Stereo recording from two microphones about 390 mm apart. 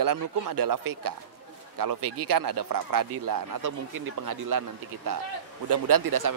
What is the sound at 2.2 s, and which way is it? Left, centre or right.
Speech, right.